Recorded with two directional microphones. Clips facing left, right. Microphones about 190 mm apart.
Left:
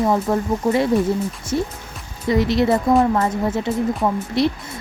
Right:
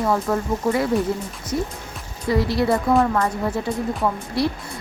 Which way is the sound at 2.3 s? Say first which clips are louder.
Left 3 dB; 20° left (ahead or behind).